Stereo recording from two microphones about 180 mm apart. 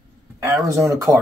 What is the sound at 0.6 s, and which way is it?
Speech, 15° right (ahead or behind).